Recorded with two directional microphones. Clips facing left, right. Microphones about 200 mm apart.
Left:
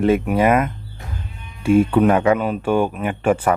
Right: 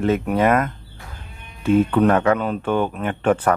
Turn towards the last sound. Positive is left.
turn(degrees=10)  # may be behind; listen again after turning